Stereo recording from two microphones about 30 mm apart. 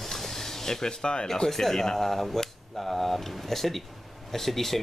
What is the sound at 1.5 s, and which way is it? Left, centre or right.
Speech, centre.